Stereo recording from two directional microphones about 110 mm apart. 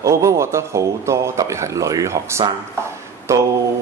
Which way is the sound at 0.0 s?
25° right (ahead or behind).